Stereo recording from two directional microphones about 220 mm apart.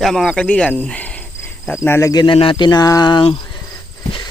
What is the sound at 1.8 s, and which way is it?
Speech, 10° left (ahead or behind).